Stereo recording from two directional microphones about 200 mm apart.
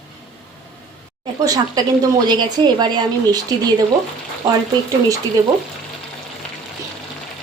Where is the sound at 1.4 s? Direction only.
20° right (ahead or behind).